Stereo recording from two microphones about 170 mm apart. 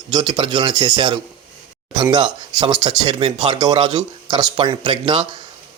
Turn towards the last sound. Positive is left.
turn(degrees=-30)  # may be behind; listen again after turning